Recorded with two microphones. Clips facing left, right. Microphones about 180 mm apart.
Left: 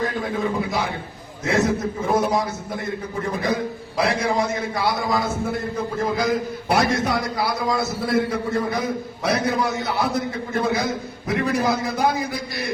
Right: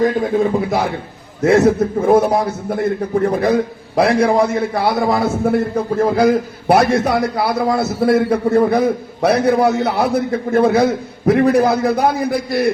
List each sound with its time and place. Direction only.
1.4 s a man's voice: 55° right (ahead or behind)